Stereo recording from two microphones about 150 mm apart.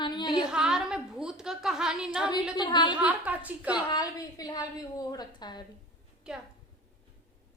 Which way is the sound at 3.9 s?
25° left (ahead or behind).